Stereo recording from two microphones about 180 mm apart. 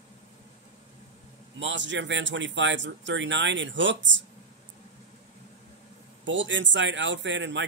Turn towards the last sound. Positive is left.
turn(degrees=-90)